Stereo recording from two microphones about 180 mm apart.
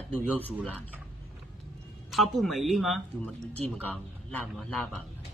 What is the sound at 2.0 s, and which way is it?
Speech, centre (ahead or behind).